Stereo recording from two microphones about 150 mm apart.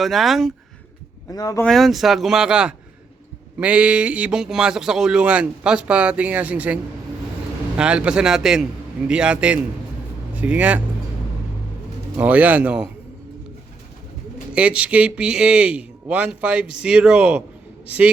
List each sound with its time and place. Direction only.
0.0 s speech: centre (ahead or behind)
1.3 s speech: 25° left (ahead or behind)
1.6 s speech: centre (ahead or behind)
7.8 s speech: 5° right (ahead or behind)
12.1 s speech: 10° right (ahead or behind)
14.5 s speech: 10° right (ahead or behind)